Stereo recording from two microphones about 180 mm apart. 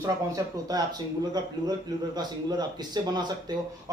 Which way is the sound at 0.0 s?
20° right (ahead or behind).